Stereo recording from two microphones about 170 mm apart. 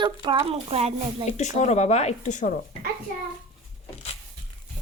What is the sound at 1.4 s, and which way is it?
Speech, 45° left (ahead or behind).